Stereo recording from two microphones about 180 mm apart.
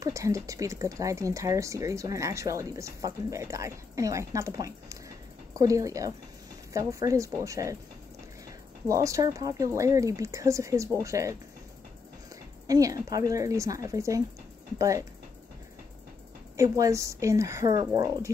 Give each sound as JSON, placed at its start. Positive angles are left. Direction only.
{"t": 0.0, "sound": "speech", "side_deg": -15}
{"t": 8.8, "sound": "speech", "side_deg": -15}
{"t": 12.6, "sound": "speech", "side_deg": -20}
{"t": 16.5, "sound": "speech", "side_deg": -20}